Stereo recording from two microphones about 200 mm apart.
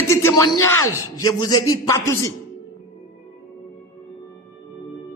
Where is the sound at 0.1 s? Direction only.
15° left (ahead or behind).